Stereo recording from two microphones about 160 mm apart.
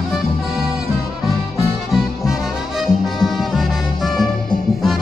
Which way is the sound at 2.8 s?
Centre (ahead or behind).